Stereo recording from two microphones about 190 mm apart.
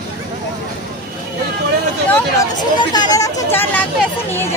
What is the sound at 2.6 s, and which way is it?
Speech, 20° left (ahead or behind).